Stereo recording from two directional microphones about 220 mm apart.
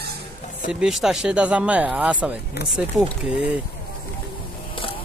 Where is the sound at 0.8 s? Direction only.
Centre (ahead or behind).